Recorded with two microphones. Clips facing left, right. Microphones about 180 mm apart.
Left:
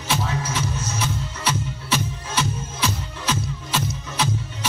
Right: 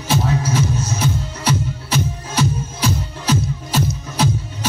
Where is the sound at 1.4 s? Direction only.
40° right (ahead or behind).